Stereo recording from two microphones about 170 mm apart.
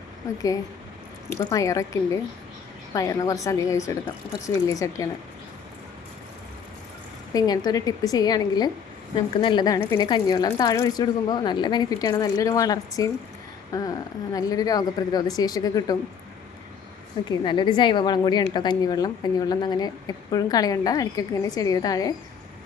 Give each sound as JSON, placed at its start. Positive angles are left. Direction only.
{"t": 1.3, "sound": "a woman's voice", "side_deg": 15}
{"t": 7.3, "sound": "a woman's voice", "side_deg": 20}
{"t": 17.4, "sound": "a woman's voice", "side_deg": 25}